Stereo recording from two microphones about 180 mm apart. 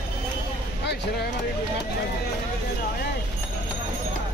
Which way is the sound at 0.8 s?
65° left (ahead or behind).